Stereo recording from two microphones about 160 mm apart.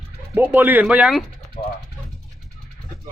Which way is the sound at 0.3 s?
10° right (ahead or behind).